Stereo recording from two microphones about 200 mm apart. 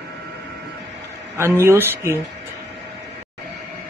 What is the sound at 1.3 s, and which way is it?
Speech, 15° right (ahead or behind).